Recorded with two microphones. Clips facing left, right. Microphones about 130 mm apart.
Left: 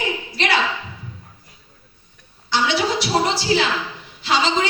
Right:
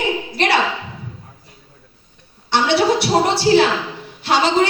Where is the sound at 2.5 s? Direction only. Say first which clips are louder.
Right 5 dB; 60° right (ahead or behind).